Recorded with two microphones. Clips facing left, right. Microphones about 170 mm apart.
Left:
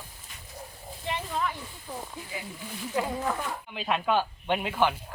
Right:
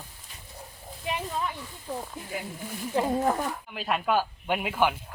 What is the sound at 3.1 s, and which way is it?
Speech, 40° right (ahead or behind).